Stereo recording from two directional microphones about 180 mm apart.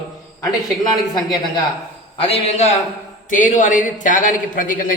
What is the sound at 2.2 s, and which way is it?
A man's voice, 35° left (ahead or behind).